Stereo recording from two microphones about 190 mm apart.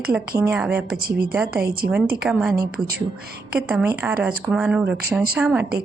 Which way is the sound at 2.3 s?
5° right (ahead or behind).